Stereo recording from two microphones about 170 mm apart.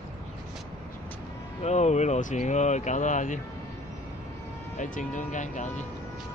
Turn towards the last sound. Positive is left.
turn(degrees=45)  # may be behind; listen again after turning